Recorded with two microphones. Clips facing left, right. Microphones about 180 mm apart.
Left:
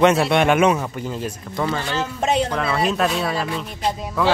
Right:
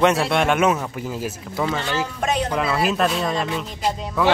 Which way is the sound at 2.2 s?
25° left (ahead or behind).